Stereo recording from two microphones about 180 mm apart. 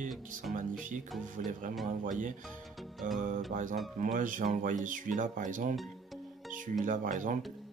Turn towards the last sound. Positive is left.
turn(degrees=-45)  # may be behind; listen again after turning